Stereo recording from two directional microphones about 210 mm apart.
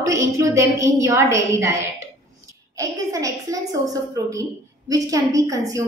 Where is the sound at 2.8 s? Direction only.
15° right (ahead or behind).